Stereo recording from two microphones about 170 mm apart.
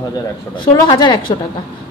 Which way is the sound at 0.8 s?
25° left (ahead or behind).